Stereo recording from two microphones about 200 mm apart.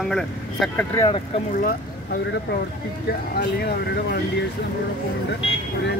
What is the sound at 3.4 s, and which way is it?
Speech, 50° left (ahead or behind).